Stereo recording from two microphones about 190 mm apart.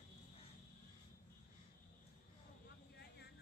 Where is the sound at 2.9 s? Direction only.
60° left (ahead or behind).